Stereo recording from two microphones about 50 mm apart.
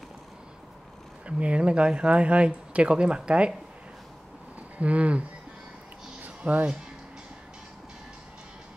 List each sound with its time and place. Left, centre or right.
1.2 s speech: right
4.7 s speech: right
6.2 s a sound: right